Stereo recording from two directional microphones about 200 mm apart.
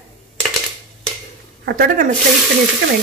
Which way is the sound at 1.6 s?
50° right (ahead or behind).